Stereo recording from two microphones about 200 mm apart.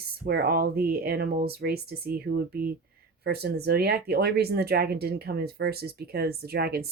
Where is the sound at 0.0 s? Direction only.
50° right (ahead or behind).